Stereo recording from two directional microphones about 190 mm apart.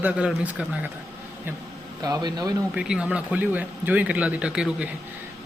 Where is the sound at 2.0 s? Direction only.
20° right (ahead or behind).